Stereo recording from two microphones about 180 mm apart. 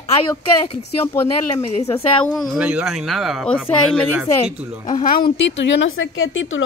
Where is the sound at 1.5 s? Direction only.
35° left (ahead or behind).